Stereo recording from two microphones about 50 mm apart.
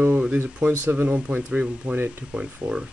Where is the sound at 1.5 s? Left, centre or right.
Right.